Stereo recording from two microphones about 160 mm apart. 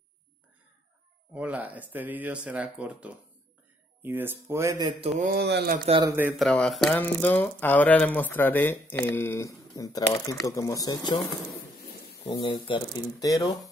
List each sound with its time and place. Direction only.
1.3 s speech: 10° right (ahead or behind)
5.2 s speech: 80° right
6.0 s speech: 15° right (ahead or behind)
6.3 s speech: 5° left (ahead or behind); by 13.7 s 20° left (ahead or behind)